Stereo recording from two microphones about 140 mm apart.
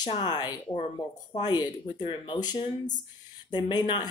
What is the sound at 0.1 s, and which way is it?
Speech, 30° left (ahead or behind).